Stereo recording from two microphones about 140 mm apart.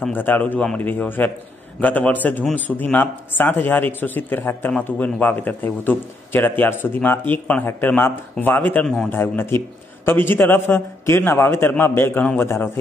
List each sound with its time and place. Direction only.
0.1 s a man's voice: 15° left (ahead or behind)
9.1 s a man's voice: 15° left (ahead or behind)